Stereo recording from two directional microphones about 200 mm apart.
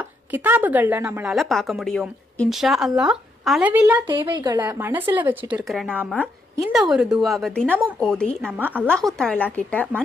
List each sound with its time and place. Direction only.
0.0 s a woman's voice: 10° right (ahead or behind)
4.1 s a woman's voice: 20° right (ahead or behind)
4.6 s a woman's voice: 10° right (ahead or behind)
8.5 s speech: 10° right (ahead or behind)
8.8 s a woman's voice: 5° left (ahead or behind)